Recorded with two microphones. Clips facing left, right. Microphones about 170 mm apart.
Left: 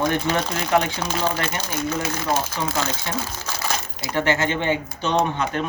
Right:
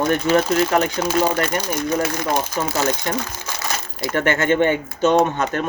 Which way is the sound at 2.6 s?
45° right (ahead or behind).